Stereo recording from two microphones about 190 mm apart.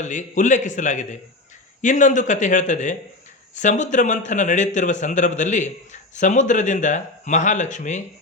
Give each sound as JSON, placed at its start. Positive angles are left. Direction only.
{"t": 0.0, "sound": "a man's voice", "side_deg": 40}